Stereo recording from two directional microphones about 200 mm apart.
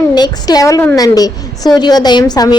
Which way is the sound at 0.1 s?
20° left (ahead or behind).